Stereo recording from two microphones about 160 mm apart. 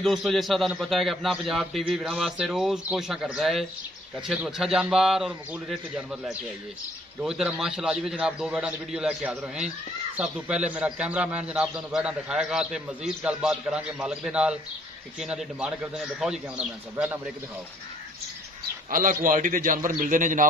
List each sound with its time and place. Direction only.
0.0 s a man's voice: centre (ahead or behind)
18.9 s a man's voice: 60° right (ahead or behind)